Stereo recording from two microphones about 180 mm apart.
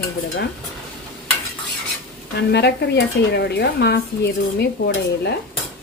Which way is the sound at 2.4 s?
70° left (ahead or behind).